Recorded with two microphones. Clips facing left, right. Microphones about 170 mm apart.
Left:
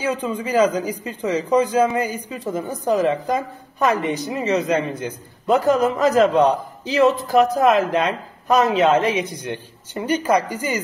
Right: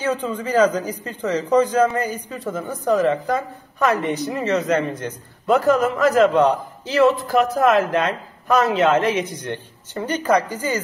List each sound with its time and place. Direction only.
0.0 s a man's voice: 10° left (ahead or behind)